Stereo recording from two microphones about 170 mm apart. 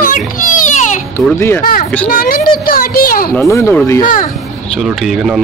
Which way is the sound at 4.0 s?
55° left (ahead or behind).